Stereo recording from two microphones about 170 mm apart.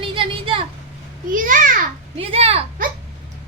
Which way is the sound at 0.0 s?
30° right (ahead or behind).